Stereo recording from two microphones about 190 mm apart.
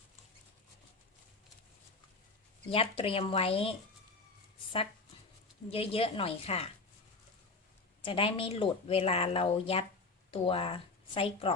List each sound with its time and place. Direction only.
2.6 s speech: 30° left (ahead or behind)
5.7 s speech: 30° left (ahead or behind)
8.0 s speech: 25° left (ahead or behind)